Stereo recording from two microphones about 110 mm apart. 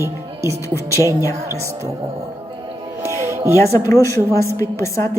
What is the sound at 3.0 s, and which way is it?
Music, 30° right (ahead or behind).